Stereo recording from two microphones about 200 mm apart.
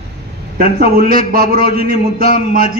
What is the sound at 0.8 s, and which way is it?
Speech, 30° left (ahead or behind).